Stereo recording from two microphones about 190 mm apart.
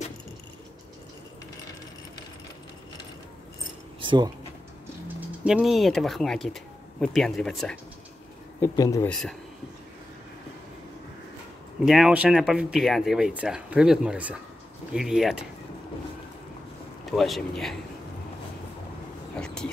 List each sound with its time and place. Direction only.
4.0 s a sound: 25° right (ahead or behind)
5.0 s speech: 5° right (ahead or behind)
8.5 s speech: 15° left (ahead or behind)
11.8 s speech: centre (ahead or behind)
17.1 s speech: centre (ahead or behind)
19.3 s a sound: 5° left (ahead or behind)